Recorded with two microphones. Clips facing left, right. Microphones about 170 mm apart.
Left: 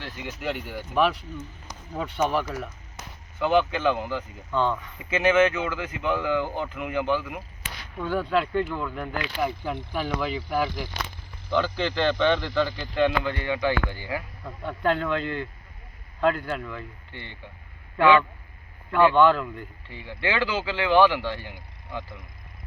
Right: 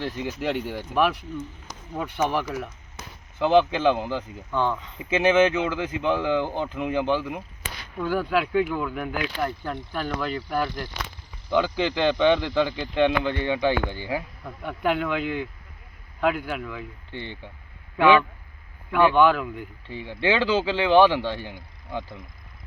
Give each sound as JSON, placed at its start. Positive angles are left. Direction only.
{"t": 0.0, "sound": "speech", "side_deg": -35}
{"t": 0.9, "sound": "speech", "side_deg": -10}
{"t": 3.3, "sound": "speech", "side_deg": -30}
{"t": 4.5, "sound": "speech", "side_deg": -15}
{"t": 4.9, "sound": "speech", "side_deg": -25}
{"t": 7.9, "sound": "speech", "side_deg": -5}
{"t": 9.6, "sound": "speech", "side_deg": 5}
{"t": 11.5, "sound": "speech", "side_deg": -15}
{"t": 14.4, "sound": "speech", "side_deg": -10}
{"t": 17.1, "sound": "speech", "side_deg": -25}
{"t": 19.9, "sound": "speech", "side_deg": -25}